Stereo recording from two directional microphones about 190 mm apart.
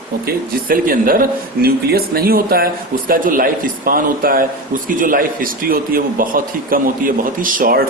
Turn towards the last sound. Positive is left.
turn(degrees=-50)  # may be behind; listen again after turning